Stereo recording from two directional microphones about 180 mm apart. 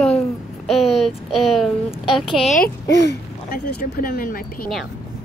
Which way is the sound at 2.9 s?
70° left (ahead or behind).